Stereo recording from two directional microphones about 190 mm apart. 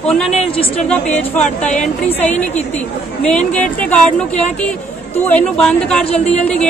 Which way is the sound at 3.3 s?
5° left (ahead or behind).